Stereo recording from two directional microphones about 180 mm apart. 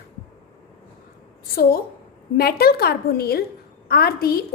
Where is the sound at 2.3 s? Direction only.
60° left (ahead or behind).